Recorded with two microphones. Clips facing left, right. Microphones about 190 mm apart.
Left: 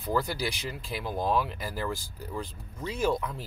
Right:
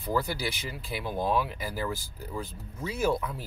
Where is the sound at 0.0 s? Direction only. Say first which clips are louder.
Even; centre (ahead or behind).